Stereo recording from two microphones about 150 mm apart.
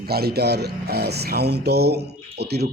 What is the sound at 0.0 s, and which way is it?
Speech, 90° right.